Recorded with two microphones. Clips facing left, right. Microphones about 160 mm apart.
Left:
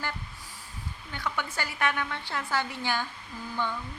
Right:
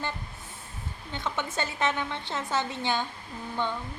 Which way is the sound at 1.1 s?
25° right (ahead or behind).